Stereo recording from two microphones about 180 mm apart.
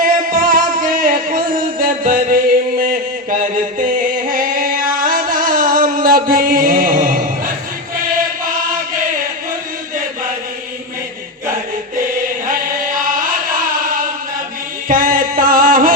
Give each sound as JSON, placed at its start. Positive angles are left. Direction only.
{"t": 0.0, "sound": "music", "side_deg": -50}
{"t": 14.8, "sound": "music", "side_deg": -50}